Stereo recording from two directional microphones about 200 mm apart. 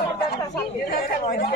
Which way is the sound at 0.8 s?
50° left (ahead or behind).